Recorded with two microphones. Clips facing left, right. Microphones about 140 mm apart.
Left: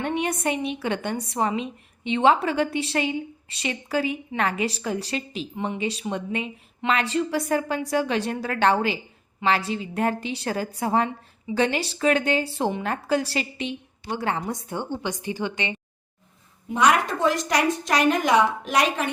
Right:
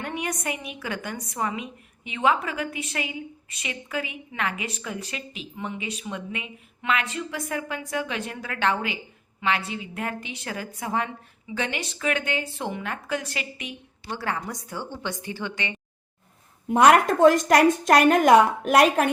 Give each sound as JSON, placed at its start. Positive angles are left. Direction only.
{"t": 0.0, "sound": "a woman's voice", "side_deg": 25}
{"t": 14.1, "sound": "a woman's voice", "side_deg": 20}
{"t": 16.6, "sound": "a woman's voice", "side_deg": -55}